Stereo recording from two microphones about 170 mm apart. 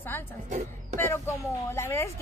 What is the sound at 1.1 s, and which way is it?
Speech, 15° left (ahead or behind).